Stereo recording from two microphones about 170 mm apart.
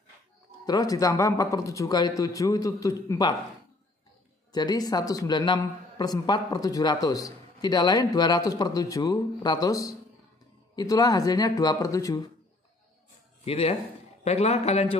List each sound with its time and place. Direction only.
0.7 s a man's voice: 20° left (ahead or behind)
4.5 s a man's voice: 25° left (ahead or behind)
13.5 s speech: 35° left (ahead or behind)